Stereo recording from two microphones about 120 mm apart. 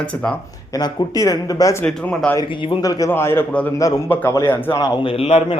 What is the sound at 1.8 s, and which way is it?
A man's voice, 10° left (ahead or behind).